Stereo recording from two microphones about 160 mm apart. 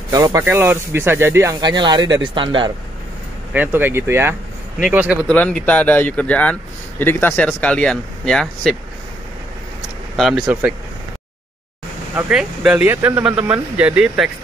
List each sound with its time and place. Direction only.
0.1 s speech: 20° right (ahead or behind)
3.5 s speech: 10° right (ahead or behind)
5.3 s speech: 5° left (ahead or behind)
10.1 s speech: centre (ahead or behind)
12.2 s speech: 5° right (ahead or behind)